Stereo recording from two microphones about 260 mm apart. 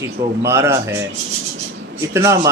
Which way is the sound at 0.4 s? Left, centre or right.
Centre.